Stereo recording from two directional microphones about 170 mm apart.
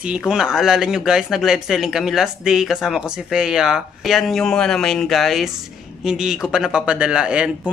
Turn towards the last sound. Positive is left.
turn(degrees=-5)  # may be behind; listen again after turning